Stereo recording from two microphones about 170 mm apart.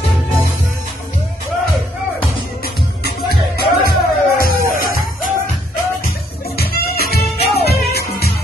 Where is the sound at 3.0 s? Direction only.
65° left (ahead or behind).